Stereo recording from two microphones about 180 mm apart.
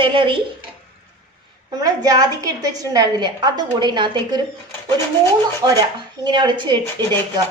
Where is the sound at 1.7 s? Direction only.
20° right (ahead or behind).